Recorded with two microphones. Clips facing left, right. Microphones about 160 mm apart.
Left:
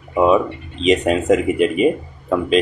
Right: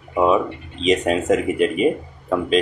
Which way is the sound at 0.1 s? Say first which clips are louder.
Left 3 dB; centre (ahead or behind).